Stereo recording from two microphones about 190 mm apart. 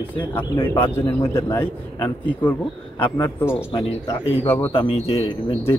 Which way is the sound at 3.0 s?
15° left (ahead or behind).